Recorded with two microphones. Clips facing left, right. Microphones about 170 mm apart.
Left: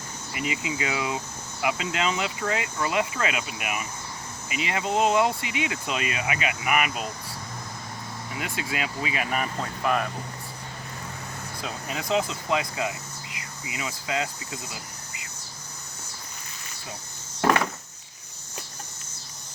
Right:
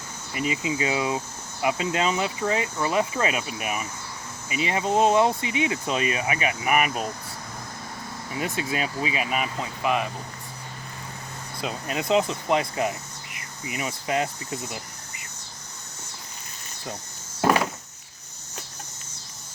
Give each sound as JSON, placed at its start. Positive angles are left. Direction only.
{"t": 0.3, "sound": "speech", "side_deg": -30}
{"t": 8.4, "sound": "speech", "side_deg": -35}
{"t": 9.3, "sound": "speech", "side_deg": -10}
{"t": 11.6, "sound": "speech", "side_deg": -20}
{"t": 17.4, "sound": "a sound", "side_deg": -15}